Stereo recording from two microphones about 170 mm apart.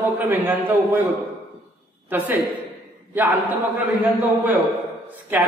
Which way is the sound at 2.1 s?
10° right (ahead or behind).